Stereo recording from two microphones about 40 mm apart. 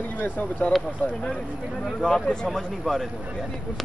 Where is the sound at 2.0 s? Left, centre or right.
Left.